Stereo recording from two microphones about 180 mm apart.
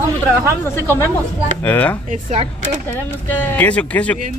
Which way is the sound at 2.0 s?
40° right (ahead or behind).